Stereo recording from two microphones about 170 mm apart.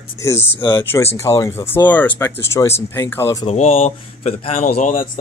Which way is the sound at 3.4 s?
35° left (ahead or behind).